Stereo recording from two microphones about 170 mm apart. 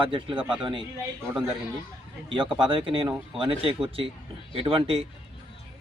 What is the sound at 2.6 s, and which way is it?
Speech, 30° right (ahead or behind).